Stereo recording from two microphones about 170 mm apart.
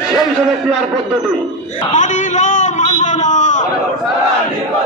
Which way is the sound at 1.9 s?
45° left (ahead or behind).